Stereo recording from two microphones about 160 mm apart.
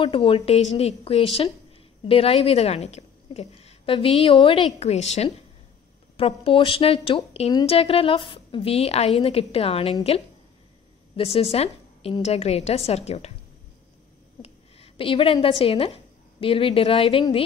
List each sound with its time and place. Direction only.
0.0 s a woman's voice: 35° left (ahead or behind)
11.1 s a woman's voice: 40° left (ahead or behind)
14.4 s a woman's voice: 35° left (ahead or behind)